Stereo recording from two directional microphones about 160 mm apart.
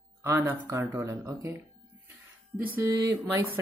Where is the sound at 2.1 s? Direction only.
15° right (ahead or behind).